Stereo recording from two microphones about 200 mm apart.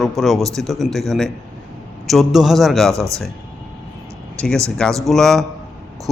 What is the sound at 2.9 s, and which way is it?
Speech, 15° right (ahead or behind).